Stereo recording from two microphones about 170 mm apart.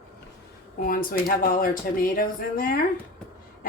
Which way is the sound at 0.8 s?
60° left (ahead or behind).